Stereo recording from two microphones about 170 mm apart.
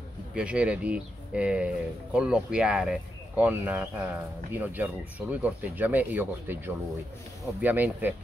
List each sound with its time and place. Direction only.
0.3 s speech: 5° right (ahead or behind)